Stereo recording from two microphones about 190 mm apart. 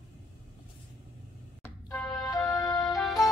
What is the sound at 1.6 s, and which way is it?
Music, 15° left (ahead or behind).